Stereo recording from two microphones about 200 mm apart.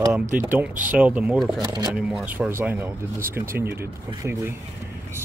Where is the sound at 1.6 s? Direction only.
20° right (ahead or behind).